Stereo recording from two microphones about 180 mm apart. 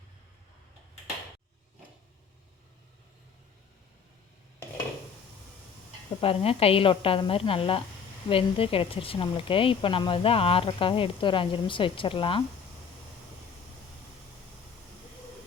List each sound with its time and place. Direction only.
6.1 s a woman's voice: 30° left (ahead or behind)